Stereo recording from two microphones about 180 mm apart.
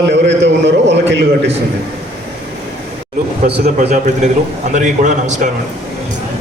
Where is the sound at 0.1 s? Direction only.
80° right.